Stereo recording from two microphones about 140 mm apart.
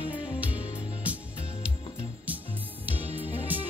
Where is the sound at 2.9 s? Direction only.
10° right (ahead or behind).